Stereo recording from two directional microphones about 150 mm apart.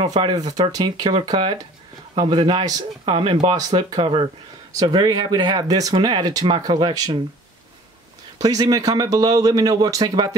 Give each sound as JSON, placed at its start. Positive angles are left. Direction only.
{"t": 0.0, "sound": "speech", "side_deg": -30}
{"t": 8.4, "sound": "speech", "side_deg": -25}